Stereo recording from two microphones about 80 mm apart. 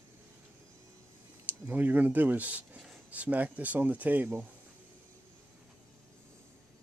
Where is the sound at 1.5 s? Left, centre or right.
Right.